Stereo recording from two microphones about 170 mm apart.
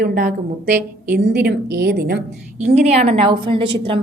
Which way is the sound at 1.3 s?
75° right (ahead or behind).